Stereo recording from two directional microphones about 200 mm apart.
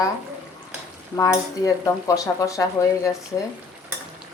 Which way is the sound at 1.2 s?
15° left (ahead or behind).